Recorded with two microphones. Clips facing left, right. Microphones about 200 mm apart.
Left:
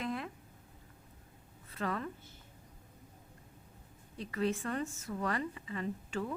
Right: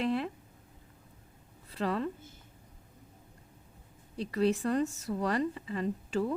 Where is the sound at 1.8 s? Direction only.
30° right (ahead or behind).